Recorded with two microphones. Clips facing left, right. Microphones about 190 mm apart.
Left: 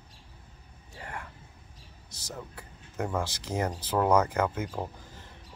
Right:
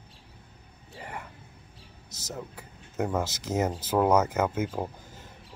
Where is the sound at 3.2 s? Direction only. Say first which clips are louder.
Right 3 dB; 20° right (ahead or behind).